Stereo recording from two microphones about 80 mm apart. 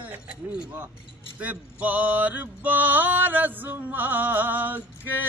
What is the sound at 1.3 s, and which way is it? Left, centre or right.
Mantra, centre.